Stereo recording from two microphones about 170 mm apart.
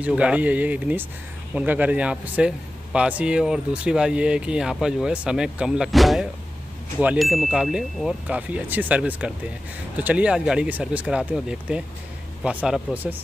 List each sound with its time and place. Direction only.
0.0 s speech: 5° right (ahead or behind)